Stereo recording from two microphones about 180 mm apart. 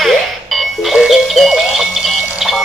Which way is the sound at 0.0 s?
Centre (ahead or behind).